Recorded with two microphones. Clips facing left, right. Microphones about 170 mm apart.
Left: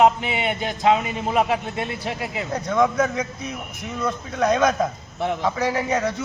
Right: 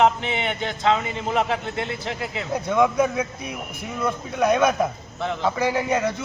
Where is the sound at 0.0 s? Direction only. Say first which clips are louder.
Left 2 dB; 10° left (ahead or behind).